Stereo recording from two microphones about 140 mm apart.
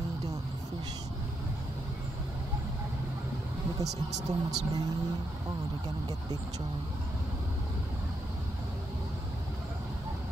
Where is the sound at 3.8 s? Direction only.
25° right (ahead or behind).